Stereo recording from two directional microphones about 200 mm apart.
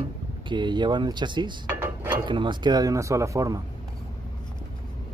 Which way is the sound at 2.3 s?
25° right (ahead or behind).